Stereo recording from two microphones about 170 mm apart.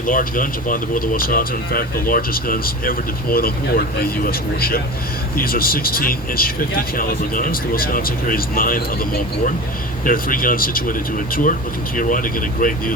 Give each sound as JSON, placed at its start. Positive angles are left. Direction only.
{"t": 0.0, "sound": "speech", "side_deg": 50}
{"t": 10.1, "sound": "speech", "side_deg": 55}
{"t": 11.9, "sound": "speech", "side_deg": 55}